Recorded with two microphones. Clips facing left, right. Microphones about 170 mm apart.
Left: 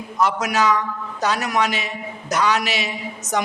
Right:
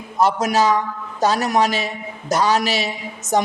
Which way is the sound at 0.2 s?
30° right (ahead or behind).